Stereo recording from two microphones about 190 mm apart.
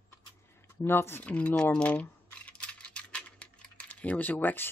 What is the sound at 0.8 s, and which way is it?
Speech, 10° left (ahead or behind).